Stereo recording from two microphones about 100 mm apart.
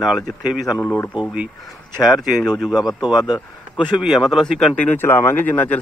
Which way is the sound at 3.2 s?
45° left (ahead or behind).